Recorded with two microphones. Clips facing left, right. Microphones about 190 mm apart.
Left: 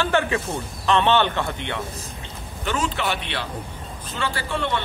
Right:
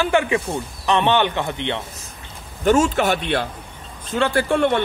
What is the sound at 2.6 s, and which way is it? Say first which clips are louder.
A man's voice: right 9 dB; 45° right (ahead or behind).